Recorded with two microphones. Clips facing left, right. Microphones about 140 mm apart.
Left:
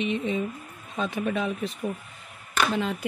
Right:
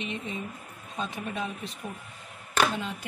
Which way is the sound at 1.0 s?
90° left.